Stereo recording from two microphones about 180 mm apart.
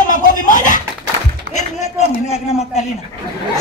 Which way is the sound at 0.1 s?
45° left (ahead or behind).